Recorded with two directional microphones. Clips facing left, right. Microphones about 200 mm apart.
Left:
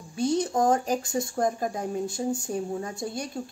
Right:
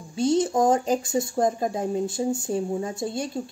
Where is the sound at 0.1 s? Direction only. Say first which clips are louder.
Right 4 dB; 20° right (ahead or behind).